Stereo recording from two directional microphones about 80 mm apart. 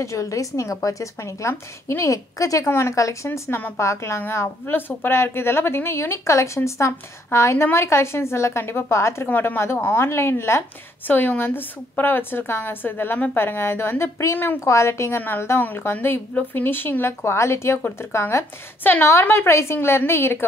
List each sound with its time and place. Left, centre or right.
0.0 s a woman's voice: left
3.3 s a woman's voice: left
11.1 s a woman's voice: left
14.6 s a woman's voice: left